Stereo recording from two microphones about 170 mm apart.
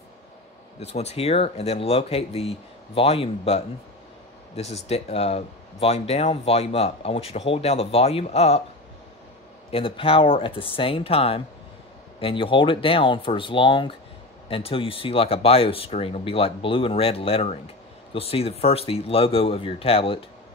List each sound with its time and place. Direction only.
0.7 s speech: 40° left (ahead or behind)
4.8 s speech: 40° left (ahead or behind)
9.7 s speech: 30° left (ahead or behind)